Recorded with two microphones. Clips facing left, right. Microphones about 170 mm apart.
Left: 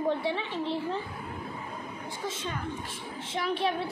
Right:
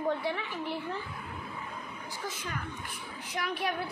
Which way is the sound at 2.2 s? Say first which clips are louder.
Left 4 dB; 25° left (ahead or behind).